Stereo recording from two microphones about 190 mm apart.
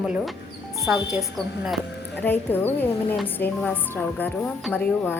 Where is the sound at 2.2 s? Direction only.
10° left (ahead or behind).